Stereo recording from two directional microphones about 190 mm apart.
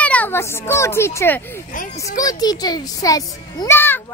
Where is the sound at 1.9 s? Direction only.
20° left (ahead or behind).